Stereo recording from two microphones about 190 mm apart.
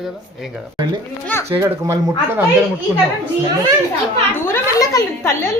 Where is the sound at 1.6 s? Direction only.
15° right (ahead or behind).